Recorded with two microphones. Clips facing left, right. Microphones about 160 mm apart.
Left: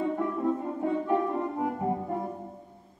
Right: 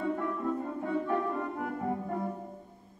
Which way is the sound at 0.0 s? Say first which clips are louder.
Left 4 dB; 20° left (ahead or behind).